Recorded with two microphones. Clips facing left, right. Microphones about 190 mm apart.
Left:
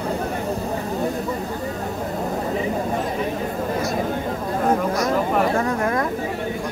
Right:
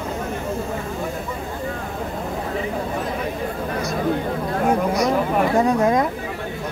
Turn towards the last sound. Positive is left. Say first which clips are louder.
# right 4 dB
turn(degrees=-15)  # may be behind; listen again after turning